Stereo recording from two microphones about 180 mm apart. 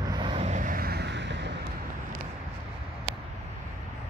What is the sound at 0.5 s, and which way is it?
Vehicle, 45° right (ahead or behind).